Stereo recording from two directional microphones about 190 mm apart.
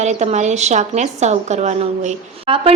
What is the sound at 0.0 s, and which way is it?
A woman's voice, 35° right (ahead or behind).